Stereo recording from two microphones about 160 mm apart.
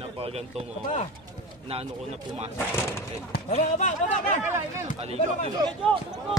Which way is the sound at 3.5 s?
50° left (ahead or behind).